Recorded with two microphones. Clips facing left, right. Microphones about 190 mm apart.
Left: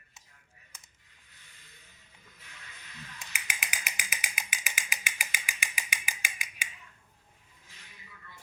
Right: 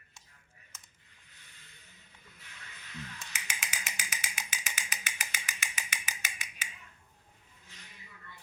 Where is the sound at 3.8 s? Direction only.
10° left (ahead or behind).